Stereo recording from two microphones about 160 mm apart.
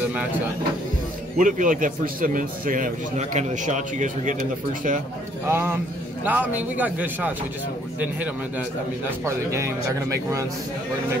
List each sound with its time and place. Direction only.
1.4 s a man's voice: 55° right (ahead or behind)
5.5 s a man's voice: 15° right (ahead or behind)